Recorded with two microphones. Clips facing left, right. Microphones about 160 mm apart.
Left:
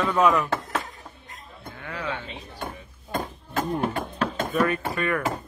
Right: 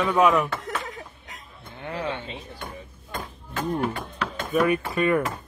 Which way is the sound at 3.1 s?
40° left (ahead or behind).